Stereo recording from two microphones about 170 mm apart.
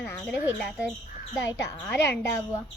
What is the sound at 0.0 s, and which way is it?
Speech, 15° left (ahead or behind).